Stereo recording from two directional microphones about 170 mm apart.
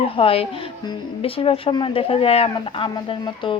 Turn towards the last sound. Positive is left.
turn(degrees=25)  # may be behind; listen again after turning